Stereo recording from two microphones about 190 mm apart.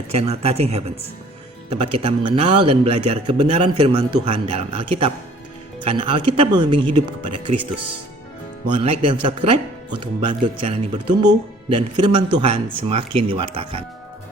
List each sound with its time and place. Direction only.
0.1 s a man's voice: 35° right (ahead or behind)
8.7 s speech: 30° right (ahead or behind)